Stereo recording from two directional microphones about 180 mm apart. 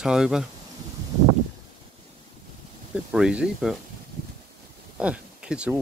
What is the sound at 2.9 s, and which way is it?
Speech, 5° right (ahead or behind).